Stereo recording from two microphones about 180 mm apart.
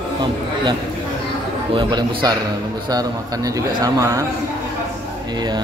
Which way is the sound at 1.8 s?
25° right (ahead or behind).